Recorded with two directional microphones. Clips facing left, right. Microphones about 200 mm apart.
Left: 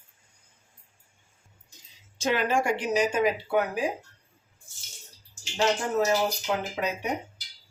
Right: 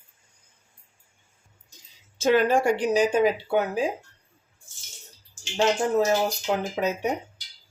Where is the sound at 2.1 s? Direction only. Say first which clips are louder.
Right 7 dB; 50° right (ahead or behind).